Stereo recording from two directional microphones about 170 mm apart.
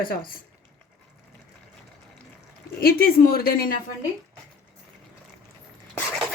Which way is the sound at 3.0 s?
60° left (ahead or behind).